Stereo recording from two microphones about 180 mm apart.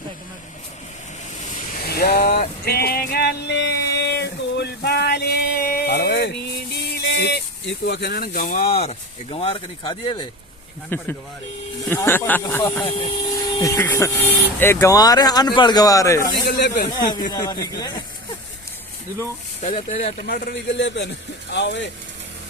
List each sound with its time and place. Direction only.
1.4 s vehicle: 45° left (ahead or behind)
1.9 s a sound: 60° left (ahead or behind)
8.7 s speech: 35° left (ahead or behind)
10.9 s speech: 10° left (ahead or behind)
12.8 s speech: 30° left (ahead or behind)
13.6 s speech: 15° left (ahead or behind)
16.5 s speech: 65° left (ahead or behind)
16.9 s speech: 20° left (ahead or behind)
19.6 s speech: 35° left (ahead or behind)
20.2 s a man's voice: 55° left (ahead or behind); by 21.8 s 75° left (ahead or behind)